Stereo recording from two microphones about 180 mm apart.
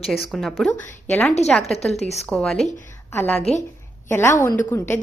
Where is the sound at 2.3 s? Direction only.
Centre (ahead or behind).